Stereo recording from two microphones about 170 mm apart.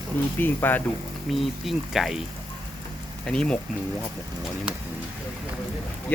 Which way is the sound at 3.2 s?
5° left (ahead or behind).